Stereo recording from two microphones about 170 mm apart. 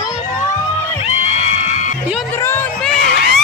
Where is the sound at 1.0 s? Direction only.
40° left (ahead or behind).